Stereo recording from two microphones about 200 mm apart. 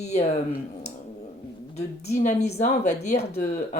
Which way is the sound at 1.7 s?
35° left (ahead or behind).